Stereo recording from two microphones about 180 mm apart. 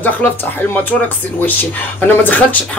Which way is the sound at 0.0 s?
10° left (ahead or behind).